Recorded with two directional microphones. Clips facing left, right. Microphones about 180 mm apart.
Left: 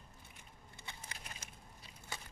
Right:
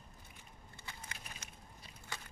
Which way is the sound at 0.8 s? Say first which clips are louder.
Even; 25° left (ahead or behind).